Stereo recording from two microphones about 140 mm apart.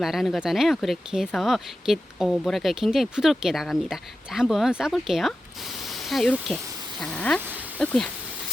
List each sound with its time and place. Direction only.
0.0 s speech: centre (ahead or behind)